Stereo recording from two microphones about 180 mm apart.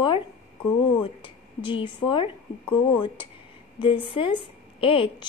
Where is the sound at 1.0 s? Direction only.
25° left (ahead or behind).